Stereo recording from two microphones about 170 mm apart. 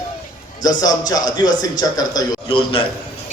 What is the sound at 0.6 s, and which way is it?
A man's voice, 20° left (ahead or behind).